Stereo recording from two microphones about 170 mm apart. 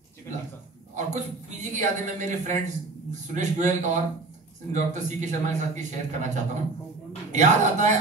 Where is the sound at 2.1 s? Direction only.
45° right (ahead or behind).